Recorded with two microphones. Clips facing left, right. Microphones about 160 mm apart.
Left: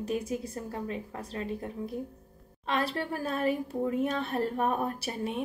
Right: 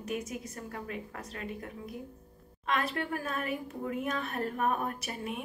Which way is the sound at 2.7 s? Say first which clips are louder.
Left 2 dB; 30° left (ahead or behind).